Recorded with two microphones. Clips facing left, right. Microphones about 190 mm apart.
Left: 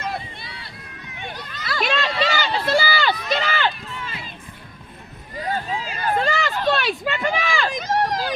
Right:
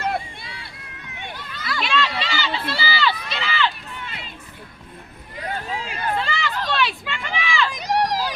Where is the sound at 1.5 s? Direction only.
45° left (ahead or behind).